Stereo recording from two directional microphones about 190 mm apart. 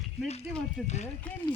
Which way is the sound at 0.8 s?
35° left (ahead or behind).